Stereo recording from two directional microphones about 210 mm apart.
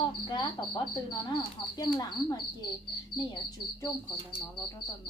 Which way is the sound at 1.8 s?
20° left (ahead or behind).